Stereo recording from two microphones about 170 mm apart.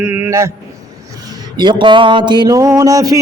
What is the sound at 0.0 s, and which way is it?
A man's voice, 10° right (ahead or behind).